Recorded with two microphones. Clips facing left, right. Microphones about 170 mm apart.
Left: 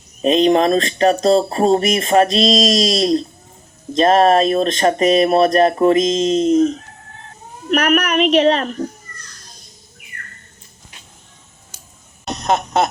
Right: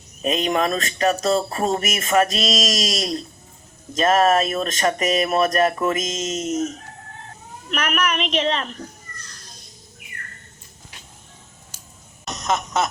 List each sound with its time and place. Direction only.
0.2 s speech: 30° left (ahead or behind)
7.7 s speech: 40° left (ahead or behind)
12.2 s a sound: 35° left (ahead or behind)